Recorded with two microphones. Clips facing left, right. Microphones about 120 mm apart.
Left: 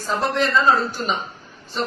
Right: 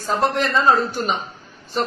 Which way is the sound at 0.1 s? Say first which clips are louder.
Right 1 dB; 45° right (ahead or behind).